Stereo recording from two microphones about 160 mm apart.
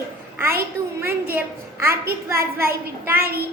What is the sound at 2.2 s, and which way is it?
A woman's voice, 15° right (ahead or behind).